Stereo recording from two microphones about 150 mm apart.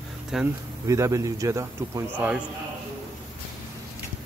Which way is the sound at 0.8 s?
20° right (ahead or behind).